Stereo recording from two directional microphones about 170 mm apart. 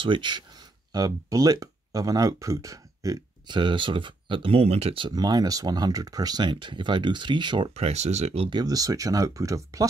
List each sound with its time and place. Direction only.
0.0 s speech: 30° right (ahead or behind)
8.5 s speech: 25° right (ahead or behind)